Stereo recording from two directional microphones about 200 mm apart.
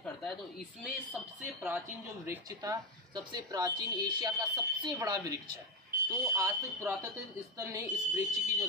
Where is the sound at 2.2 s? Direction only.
15° right (ahead or behind).